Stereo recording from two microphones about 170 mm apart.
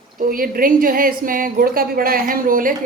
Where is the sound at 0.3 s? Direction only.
60° right (ahead or behind).